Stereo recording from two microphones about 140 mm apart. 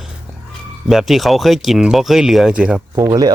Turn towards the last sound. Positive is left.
turn(degrees=-30)  # may be behind; listen again after turning